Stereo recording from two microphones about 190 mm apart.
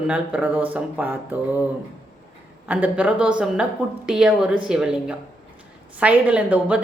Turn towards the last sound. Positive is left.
turn(degrees=-5)  # may be behind; listen again after turning